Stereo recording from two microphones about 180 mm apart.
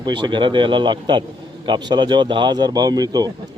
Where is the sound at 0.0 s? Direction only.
25° right (ahead or behind).